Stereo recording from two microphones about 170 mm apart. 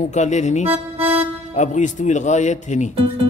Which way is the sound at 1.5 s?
45° left (ahead or behind).